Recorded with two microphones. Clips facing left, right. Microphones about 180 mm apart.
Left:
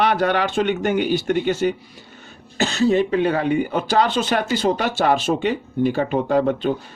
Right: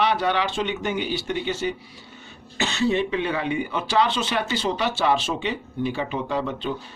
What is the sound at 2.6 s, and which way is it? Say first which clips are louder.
Speech: left 5 dB; 40° left (ahead or behind).